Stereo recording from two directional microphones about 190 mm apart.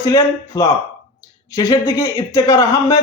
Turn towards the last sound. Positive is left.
turn(degrees=15)  # may be behind; listen again after turning